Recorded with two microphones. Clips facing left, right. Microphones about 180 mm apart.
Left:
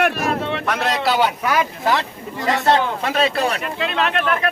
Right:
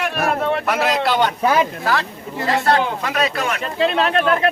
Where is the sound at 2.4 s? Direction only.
20° left (ahead or behind).